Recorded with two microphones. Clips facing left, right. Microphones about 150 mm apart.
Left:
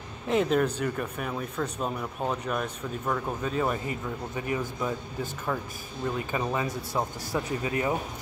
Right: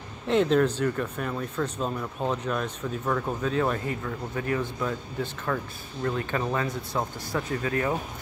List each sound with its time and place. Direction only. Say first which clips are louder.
0.3 s speech: right 3 dB; 5° left (ahead or behind)